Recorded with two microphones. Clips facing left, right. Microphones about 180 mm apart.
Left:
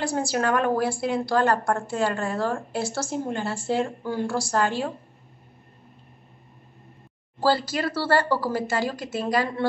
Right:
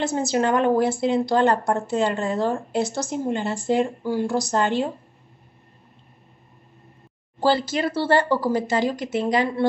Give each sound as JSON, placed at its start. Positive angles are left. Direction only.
{"t": 0.0, "sound": "a woman's voice", "side_deg": -20}
{"t": 7.3, "sound": "a woman's voice", "side_deg": -25}